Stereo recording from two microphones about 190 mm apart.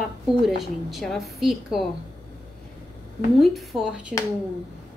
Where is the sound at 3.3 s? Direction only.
Centre (ahead or behind).